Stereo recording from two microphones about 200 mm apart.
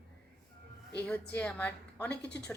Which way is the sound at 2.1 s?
55° left (ahead or behind).